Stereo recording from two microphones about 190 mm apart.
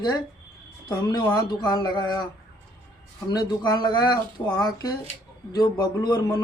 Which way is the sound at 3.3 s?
20° left (ahead or behind).